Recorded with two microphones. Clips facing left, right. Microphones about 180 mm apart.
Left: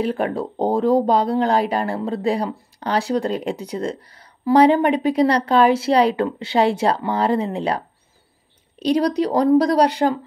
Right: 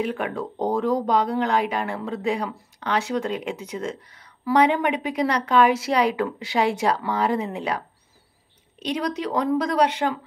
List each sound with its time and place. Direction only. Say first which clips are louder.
0.0 s speech: left 5 dB; 35° left (ahead or behind)